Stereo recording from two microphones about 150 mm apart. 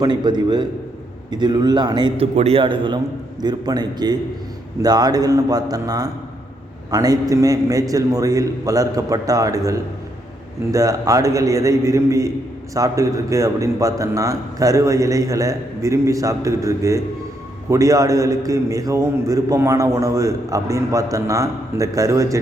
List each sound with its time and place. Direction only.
0.0 s a man's voice: 30° right (ahead or behind)